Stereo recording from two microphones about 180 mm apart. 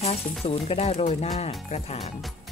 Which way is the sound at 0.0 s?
35° left (ahead or behind).